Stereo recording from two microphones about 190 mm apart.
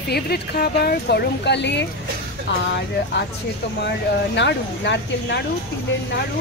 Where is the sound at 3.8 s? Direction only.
65° left (ahead or behind).